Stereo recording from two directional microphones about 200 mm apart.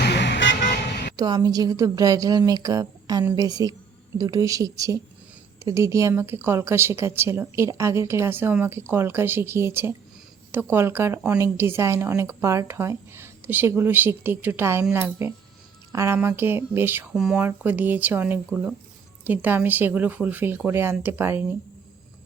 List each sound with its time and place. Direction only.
0.0 s vehicle: 60° left (ahead or behind)
1.1 s a woman's voice: 20° right (ahead or behind)